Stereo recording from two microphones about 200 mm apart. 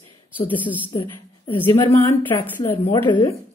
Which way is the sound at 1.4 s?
25° left (ahead or behind).